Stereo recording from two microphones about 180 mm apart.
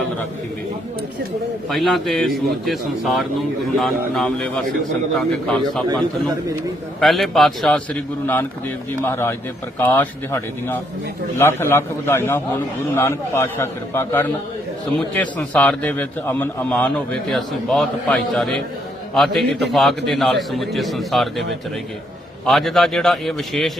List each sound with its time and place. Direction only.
1.7 s a man's voice: centre (ahead or behind)
7.0 s a man's voice: centre (ahead or behind)
9.0 s a man's voice: 15° left (ahead or behind)
22.4 s a man's voice: centre (ahead or behind)